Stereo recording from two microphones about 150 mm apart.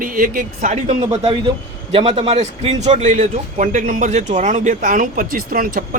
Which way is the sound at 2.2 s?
45° right (ahead or behind).